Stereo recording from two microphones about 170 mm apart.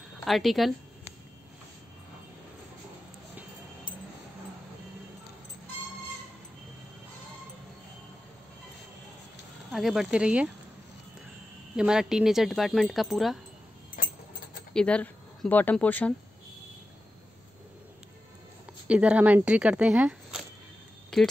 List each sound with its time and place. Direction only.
0.2 s speech: centre (ahead or behind)
9.7 s speech: centre (ahead or behind)
11.7 s speech: 5° right (ahead or behind)
14.0 s a sound: 55° left (ahead or behind)
14.7 s speech: 5° left (ahead or behind)
18.9 s speech: 5° right (ahead or behind)